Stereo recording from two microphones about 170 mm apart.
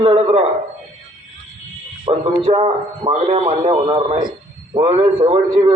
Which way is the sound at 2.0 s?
30° right (ahead or behind).